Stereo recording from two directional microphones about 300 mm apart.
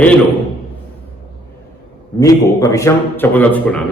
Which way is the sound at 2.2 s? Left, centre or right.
Centre.